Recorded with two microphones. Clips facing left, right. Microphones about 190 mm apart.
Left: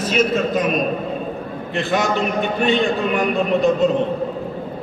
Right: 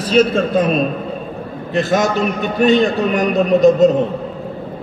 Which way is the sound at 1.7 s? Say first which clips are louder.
Right 4 dB; 40° right (ahead or behind).